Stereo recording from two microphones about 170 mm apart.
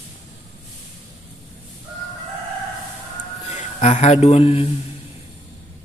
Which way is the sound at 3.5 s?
45° left (ahead or behind).